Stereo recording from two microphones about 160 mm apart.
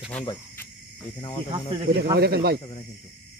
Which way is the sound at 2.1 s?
85° right.